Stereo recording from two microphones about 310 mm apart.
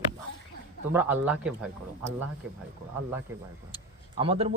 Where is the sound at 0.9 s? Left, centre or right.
Centre.